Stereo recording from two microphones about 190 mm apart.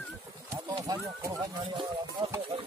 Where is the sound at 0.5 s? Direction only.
20° right (ahead or behind).